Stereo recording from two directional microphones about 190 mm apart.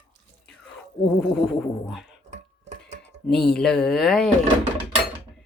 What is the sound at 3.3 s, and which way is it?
A woman's voice, 5° left (ahead or behind).